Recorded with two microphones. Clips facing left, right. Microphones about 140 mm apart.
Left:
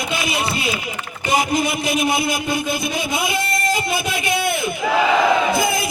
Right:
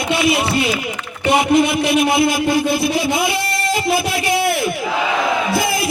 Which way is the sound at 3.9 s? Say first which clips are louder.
Right 4 dB; 30° right (ahead or behind).